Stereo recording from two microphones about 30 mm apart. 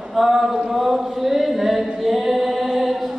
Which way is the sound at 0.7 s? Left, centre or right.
Centre.